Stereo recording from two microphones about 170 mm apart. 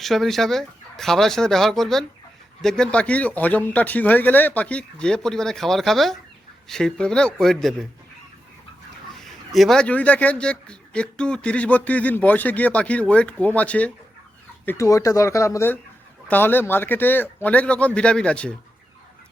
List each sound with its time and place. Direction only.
0.0 s a man's voice: centre (ahead or behind)
9.2 s a man's voice: centre (ahead or behind)